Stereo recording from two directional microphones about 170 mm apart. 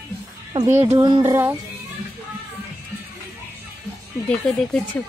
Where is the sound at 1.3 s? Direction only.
15° right (ahead or behind).